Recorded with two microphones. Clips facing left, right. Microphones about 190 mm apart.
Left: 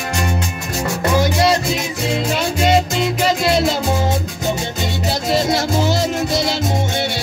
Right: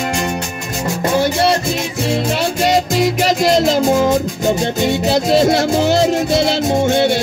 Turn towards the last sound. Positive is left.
turn(degrees=-55)  # may be behind; listen again after turning